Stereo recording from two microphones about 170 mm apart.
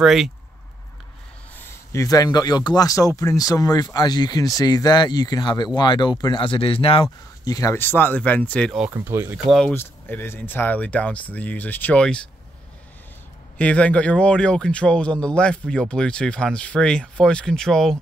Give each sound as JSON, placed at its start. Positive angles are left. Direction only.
{"t": 0.0, "sound": "speech", "side_deg": 0}
{"t": 1.9, "sound": "speech", "side_deg": 20}
{"t": 8.9, "sound": "speech", "side_deg": -15}
{"t": 9.5, "sound": "speech", "side_deg": 5}
{"t": 13.6, "sound": "speech", "side_deg": 10}